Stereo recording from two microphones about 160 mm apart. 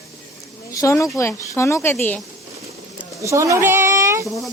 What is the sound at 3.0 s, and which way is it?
Speech, 20° right (ahead or behind).